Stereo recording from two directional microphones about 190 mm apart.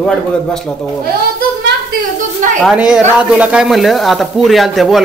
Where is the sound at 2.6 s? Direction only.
5° right (ahead or behind).